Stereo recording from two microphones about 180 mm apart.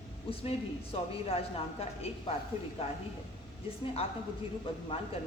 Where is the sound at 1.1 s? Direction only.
35° left (ahead or behind).